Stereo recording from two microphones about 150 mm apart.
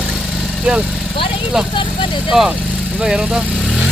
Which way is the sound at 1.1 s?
35° left (ahead or behind).